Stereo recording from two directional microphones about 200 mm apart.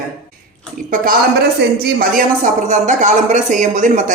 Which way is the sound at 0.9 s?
45° right (ahead or behind).